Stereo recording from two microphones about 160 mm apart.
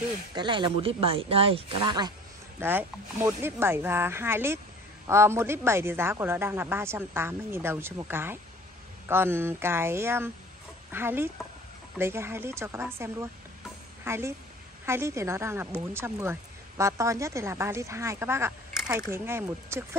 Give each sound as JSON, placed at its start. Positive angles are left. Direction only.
{"t": 0.3, "sound": "speech", "side_deg": -30}
{"t": 2.6, "sound": "speech", "side_deg": -15}